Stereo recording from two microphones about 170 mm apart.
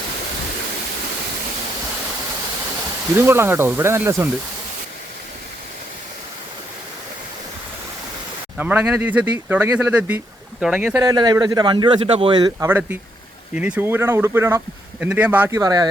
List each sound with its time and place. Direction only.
3.2 s speech: 15° right (ahead or behind)
8.5 s speech: 10° right (ahead or behind)
11.0 s a man's voice: 20° right (ahead or behind)